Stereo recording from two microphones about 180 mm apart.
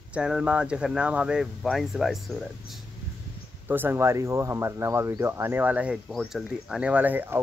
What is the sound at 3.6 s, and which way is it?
Speech, 10° right (ahead or behind).